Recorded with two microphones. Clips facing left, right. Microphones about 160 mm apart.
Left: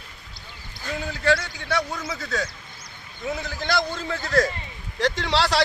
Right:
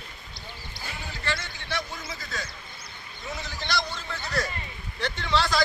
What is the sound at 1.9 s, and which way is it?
Speech, 70° left (ahead or behind).